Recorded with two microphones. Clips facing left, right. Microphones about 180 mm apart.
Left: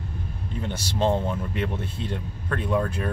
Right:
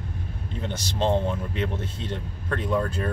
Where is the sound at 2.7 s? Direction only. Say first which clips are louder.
Left 1 dB; 5° left (ahead or behind).